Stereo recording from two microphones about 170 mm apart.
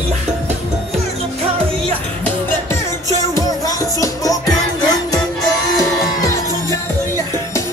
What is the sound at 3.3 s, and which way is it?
Music, 20° left (ahead or behind).